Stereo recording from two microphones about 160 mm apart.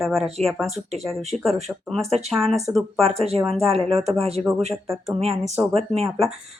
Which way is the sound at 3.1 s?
40° right (ahead or behind).